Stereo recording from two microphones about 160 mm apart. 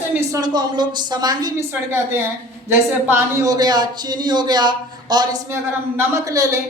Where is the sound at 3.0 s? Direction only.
15° right (ahead or behind).